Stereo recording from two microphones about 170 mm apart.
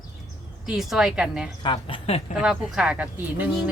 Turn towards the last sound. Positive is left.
turn(degrees=-10)  # may be behind; listen again after turning